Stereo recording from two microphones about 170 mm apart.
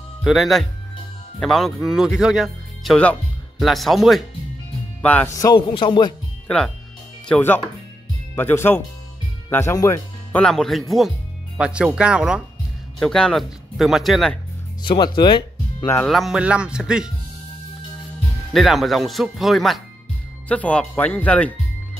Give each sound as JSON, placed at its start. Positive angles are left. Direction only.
{"t": 0.2, "sound": "speech", "side_deg": 0}
{"t": 5.3, "sound": "a man's voice", "side_deg": 20}
{"t": 6.4, "sound": "speech", "side_deg": 5}
{"t": 10.4, "sound": "speech", "side_deg": 5}
{"t": 14.8, "sound": "speech", "side_deg": 30}
{"t": 15.1, "sound": "music", "side_deg": 30}
{"t": 16.1, "sound": "speech", "side_deg": 0}
{"t": 18.5, "sound": "speech", "side_deg": 0}